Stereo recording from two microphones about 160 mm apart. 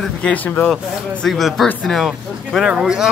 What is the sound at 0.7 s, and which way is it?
Speech, centre (ahead or behind).